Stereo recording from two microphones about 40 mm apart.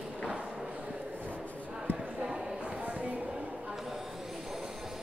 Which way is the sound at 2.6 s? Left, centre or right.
Right.